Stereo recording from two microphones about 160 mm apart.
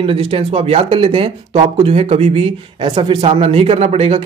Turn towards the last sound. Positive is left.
turn(degrees=-40)  # may be behind; listen again after turning